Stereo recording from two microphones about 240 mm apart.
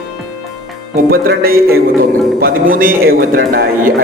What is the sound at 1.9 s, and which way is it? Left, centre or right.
Music, centre.